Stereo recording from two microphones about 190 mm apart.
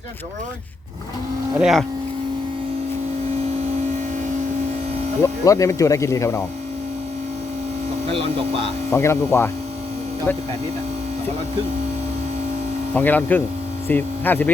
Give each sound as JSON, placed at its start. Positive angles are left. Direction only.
{"t": 1.5, "sound": "speech", "side_deg": -5}
{"t": 5.2, "sound": "speech", "side_deg": 15}
{"t": 8.1, "sound": "speech", "side_deg": -30}
{"t": 8.9, "sound": "speech", "side_deg": 15}
{"t": 12.9, "sound": "speech", "side_deg": 10}